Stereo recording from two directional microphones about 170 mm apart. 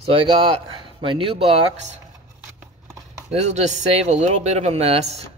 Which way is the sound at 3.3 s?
40° right (ahead or behind).